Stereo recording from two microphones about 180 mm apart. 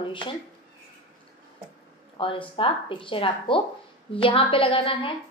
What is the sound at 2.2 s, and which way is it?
A woman's voice, 30° left (ahead or behind).